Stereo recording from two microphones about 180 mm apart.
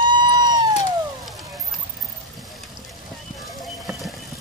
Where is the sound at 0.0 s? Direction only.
25° right (ahead or behind).